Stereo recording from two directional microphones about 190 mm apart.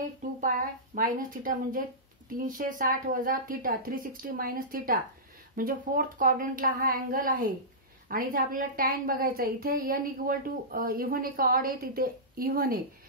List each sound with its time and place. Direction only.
0.4 s a woman's voice: 45° right (ahead or behind)